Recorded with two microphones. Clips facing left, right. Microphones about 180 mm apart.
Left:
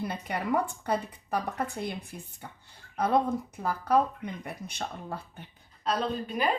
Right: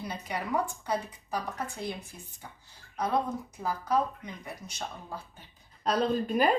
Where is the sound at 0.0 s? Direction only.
55° left (ahead or behind).